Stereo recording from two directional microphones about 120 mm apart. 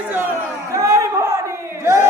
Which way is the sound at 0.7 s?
25° right (ahead or behind).